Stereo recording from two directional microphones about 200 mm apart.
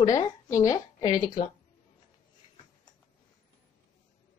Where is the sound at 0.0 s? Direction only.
20° left (ahead or behind).